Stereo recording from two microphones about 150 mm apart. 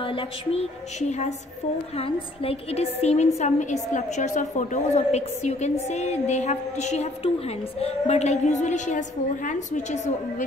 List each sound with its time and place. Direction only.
0.0 s a woman's voice: 35° left (ahead or behind); by 10.1 s 50° left (ahead or behind)